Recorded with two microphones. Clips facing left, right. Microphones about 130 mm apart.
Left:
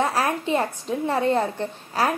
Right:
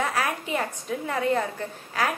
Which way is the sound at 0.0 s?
30° left (ahead or behind).